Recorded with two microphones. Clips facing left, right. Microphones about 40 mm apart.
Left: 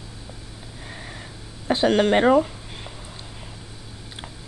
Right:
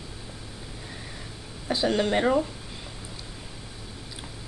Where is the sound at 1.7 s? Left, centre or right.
Left.